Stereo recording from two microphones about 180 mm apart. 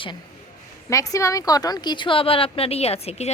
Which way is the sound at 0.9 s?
15° left (ahead or behind).